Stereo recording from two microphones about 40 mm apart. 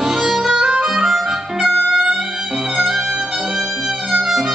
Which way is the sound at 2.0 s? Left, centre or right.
Centre.